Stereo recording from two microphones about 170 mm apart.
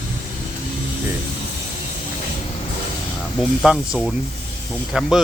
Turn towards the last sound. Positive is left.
turn(degrees=0)  # may be behind; listen again after turning